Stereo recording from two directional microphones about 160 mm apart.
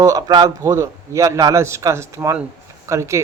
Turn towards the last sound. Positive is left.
turn(degrees=-20)  # may be behind; listen again after turning